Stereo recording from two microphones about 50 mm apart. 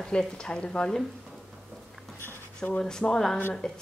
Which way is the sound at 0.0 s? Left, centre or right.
Centre.